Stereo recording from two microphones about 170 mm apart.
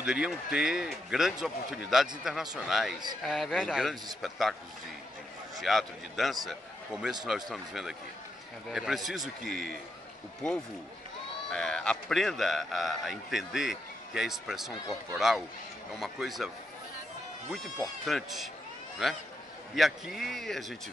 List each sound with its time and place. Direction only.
0.0 s a man's voice: 5° right (ahead or behind)
5.6 s a man's voice: centre (ahead or behind)
11.5 s a man's voice: 5° left (ahead or behind)